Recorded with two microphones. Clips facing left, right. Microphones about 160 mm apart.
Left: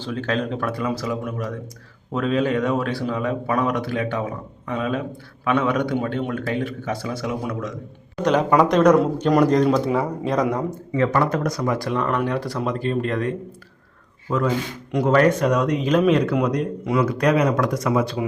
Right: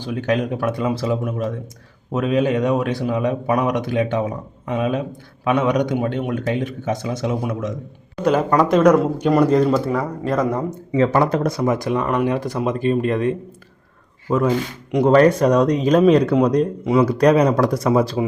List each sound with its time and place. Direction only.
0.0 s speech: 15° right (ahead or behind)
8.2 s speech: 5° right (ahead or behind)
10.7 s speech: 25° right (ahead or behind)
16.8 s speech: 20° right (ahead or behind)
17.1 s speech: 35° right (ahead or behind)